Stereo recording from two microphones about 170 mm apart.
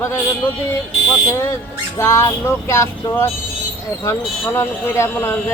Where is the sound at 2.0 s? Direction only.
15° left (ahead or behind).